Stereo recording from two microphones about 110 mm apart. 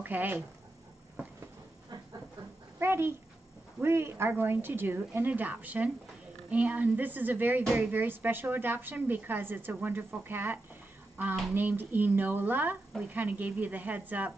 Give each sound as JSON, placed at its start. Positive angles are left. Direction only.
{"t": 0.0, "sound": "speech", "side_deg": -15}
{"t": 2.8, "sound": "a woman's voice", "side_deg": -20}